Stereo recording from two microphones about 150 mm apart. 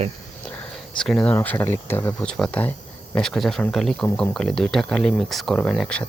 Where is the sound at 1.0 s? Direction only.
5° left (ahead or behind).